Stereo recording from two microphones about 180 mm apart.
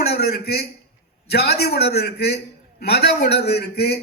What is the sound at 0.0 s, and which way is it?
A man's voice, 60° left (ahead or behind).